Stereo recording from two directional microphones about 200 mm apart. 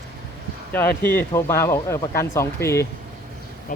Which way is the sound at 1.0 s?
10° left (ahead or behind).